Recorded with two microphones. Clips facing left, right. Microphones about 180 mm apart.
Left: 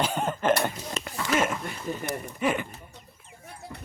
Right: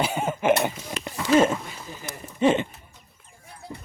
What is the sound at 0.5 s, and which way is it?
Speech, 20° right (ahead or behind).